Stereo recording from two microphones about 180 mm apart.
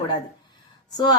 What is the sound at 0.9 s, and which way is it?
Speech, 20° left (ahead or behind).